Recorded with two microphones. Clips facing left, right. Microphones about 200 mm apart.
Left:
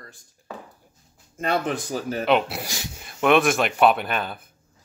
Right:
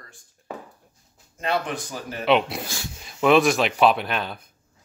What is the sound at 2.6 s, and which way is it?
Speech, 20° left (ahead or behind).